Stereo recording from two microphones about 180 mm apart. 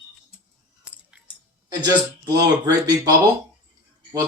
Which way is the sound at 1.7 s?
20° right (ahead or behind).